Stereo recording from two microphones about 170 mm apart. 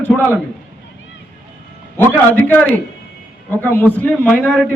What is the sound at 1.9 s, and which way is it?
A man's voice, 10° left (ahead or behind).